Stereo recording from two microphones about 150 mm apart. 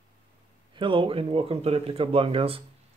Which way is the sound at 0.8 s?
35° right (ahead or behind).